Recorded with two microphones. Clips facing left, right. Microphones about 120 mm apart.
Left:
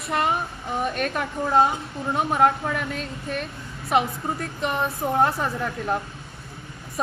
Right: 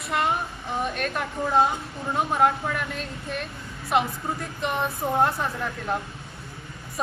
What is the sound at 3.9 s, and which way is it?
Speech, centre (ahead or behind).